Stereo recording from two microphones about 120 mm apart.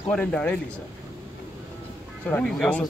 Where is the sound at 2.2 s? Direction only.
10° left (ahead or behind).